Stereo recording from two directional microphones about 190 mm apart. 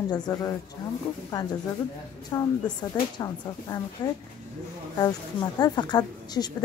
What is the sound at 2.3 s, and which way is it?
A woman's voice, 20° left (ahead or behind).